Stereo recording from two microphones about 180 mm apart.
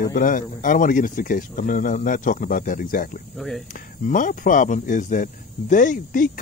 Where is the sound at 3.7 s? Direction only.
45° left (ahead or behind).